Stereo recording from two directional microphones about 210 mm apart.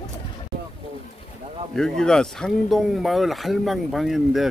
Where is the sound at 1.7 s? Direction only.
Centre (ahead or behind).